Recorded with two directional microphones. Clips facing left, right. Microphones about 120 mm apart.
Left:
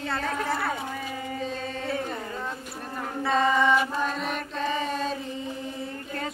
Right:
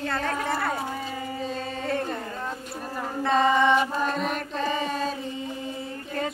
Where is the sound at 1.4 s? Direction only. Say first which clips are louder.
Right 1 dB; centre (ahead or behind).